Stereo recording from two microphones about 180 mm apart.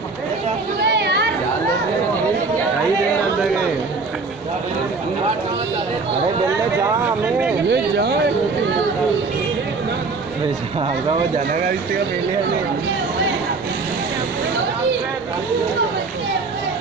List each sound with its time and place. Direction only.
0.8 s chatter: 70° right (ahead or behind)
7.7 s speech: 70° right (ahead or behind)